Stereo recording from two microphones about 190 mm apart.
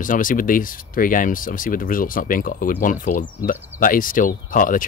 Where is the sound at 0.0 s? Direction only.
45° left (ahead or behind).